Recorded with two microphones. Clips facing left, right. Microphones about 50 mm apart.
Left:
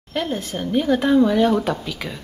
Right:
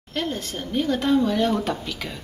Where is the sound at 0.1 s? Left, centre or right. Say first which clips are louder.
Left 3 dB; centre.